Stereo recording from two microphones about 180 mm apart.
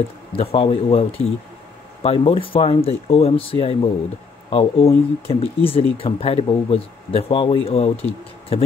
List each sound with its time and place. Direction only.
0.4 s speech: 35° left (ahead or behind)